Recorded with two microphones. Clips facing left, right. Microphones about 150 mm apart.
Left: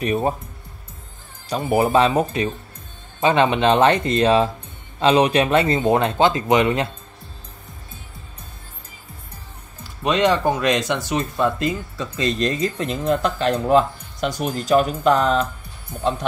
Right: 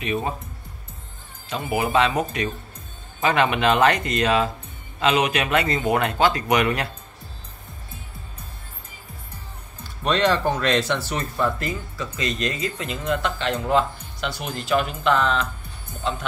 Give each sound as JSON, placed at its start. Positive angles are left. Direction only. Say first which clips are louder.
{"t": 0.0, "sound": "speech", "louder": "left 5 dB", "side_deg": 40}
{"t": 1.5, "sound": "speech", "louder": "left 5 dB", "side_deg": 35}
{"t": 10.0, "sound": "speech", "louder": "left 3 dB", "side_deg": 15}